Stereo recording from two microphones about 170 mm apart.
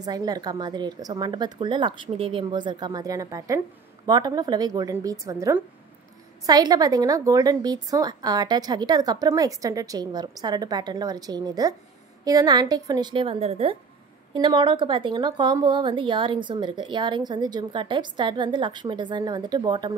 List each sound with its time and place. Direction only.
0.0 s a woman's voice: 20° right (ahead or behind)